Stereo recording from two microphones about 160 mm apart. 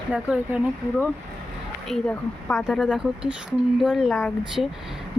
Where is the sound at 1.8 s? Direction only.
5° left (ahead or behind).